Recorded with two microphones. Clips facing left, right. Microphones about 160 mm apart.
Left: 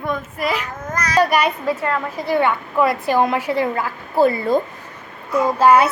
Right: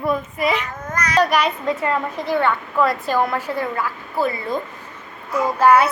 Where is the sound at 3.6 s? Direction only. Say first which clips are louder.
Left 3 dB; 25° left (ahead or behind).